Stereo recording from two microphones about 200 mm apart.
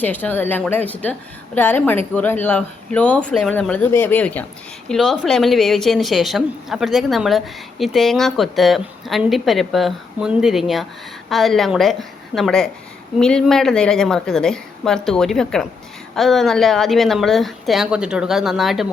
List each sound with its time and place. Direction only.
0.0 s a woman's voice: 10° left (ahead or behind)